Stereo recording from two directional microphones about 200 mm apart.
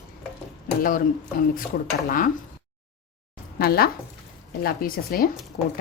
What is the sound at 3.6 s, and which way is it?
Speech, 50° left (ahead or behind).